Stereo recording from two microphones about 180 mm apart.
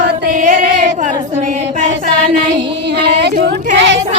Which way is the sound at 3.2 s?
65° right (ahead or behind).